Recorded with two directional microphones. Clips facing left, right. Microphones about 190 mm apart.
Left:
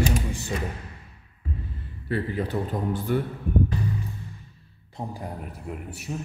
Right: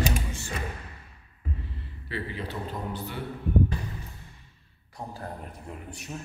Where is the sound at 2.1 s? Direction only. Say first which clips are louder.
Left 7 dB; 50° left (ahead or behind).